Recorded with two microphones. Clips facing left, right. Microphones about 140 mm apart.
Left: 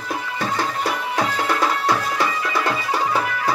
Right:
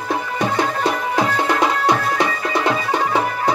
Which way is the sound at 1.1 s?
20° right (ahead or behind).